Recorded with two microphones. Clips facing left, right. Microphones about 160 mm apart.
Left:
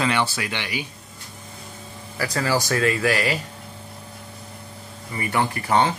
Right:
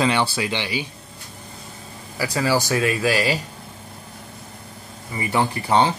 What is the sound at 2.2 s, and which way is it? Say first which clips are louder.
Speech: right 2 dB; 10° right (ahead or behind).